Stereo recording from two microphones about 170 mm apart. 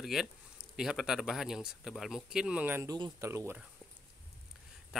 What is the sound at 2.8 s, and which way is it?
Speech, 20° right (ahead or behind).